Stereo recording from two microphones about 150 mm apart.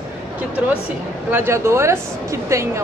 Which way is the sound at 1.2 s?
15° right (ahead or behind).